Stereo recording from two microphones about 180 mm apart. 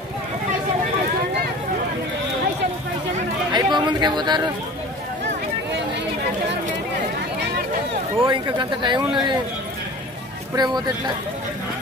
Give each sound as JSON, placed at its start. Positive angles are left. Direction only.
{"t": 3.5, "sound": "speech", "side_deg": -25}
{"t": 8.3, "sound": "a man's voice", "side_deg": -25}
{"t": 10.5, "sound": "speech", "side_deg": -20}